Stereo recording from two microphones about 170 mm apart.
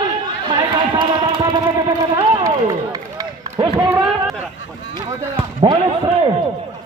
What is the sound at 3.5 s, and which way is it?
Speech, 30° right (ahead or behind).